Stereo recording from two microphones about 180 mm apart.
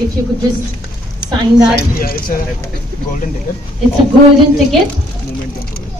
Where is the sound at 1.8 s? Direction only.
55° left (ahead or behind).